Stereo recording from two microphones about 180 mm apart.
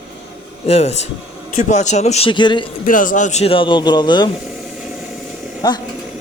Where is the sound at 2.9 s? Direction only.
45° left (ahead or behind); by 4.3 s 25° left (ahead or behind).